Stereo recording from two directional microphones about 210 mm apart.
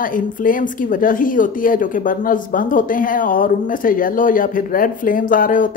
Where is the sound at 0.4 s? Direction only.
40° left (ahead or behind).